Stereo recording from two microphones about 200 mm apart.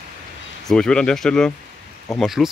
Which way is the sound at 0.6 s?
5° left (ahead or behind).